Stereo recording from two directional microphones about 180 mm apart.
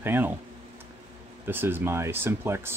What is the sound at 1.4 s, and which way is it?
Speech, 10° right (ahead or behind).